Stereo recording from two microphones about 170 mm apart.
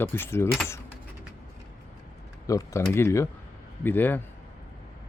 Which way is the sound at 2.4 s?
20° left (ahead or behind).